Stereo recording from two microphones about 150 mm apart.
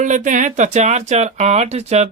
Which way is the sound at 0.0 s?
55° right (ahead or behind).